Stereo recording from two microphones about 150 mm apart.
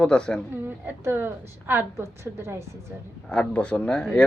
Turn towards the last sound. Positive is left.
turn(degrees=5)  # may be behind; listen again after turning